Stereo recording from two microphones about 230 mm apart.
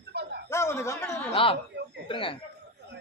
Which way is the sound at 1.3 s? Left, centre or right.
Left.